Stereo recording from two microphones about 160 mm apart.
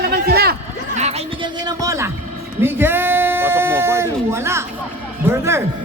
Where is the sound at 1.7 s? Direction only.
20° right (ahead or behind).